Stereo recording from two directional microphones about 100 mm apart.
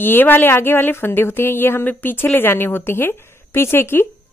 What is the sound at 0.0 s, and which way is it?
A woman's voice, 20° left (ahead or behind).